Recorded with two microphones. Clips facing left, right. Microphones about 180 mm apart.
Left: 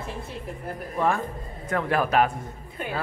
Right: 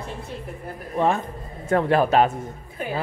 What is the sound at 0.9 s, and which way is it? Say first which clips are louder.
A man's voice: right 3 dB; 25° right (ahead or behind).